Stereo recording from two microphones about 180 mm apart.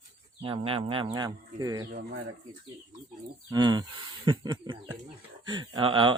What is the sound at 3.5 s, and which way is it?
Speech, 25° right (ahead or behind).